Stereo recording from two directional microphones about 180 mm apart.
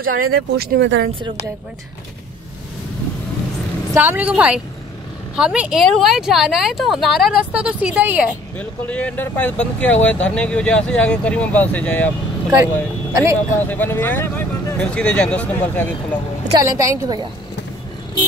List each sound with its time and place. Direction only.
0.0 s speech: 55° right (ahead or behind); by 1.0 s 80° right
3.9 s a woman's voice: 10° right (ahead or behind)
8.5 s speech: 10° left (ahead or behind)
13.1 s a woman's voice: 15° right (ahead or behind)
13.6 s speech: 10° left (ahead or behind)
16.5 s a woman's voice: 15° right (ahead or behind)